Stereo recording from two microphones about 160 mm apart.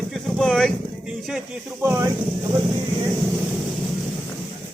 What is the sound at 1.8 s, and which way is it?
Speech, 15° right (ahead or behind).